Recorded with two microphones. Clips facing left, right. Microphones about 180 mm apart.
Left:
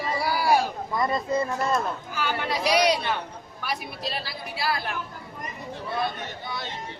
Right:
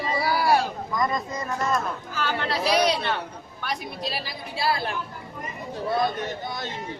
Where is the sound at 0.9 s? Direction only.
30° left (ahead or behind).